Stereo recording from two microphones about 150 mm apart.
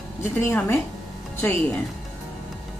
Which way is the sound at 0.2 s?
15° left (ahead or behind).